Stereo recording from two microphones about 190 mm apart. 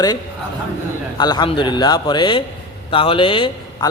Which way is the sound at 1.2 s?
25° left (ahead or behind).